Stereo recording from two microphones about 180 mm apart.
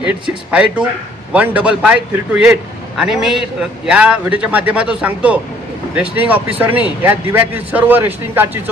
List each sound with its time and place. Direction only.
0.0 s a man's voice: 5° right (ahead or behind)